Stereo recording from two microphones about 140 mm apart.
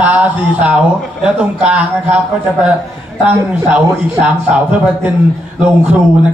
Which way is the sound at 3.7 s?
10° right (ahead or behind).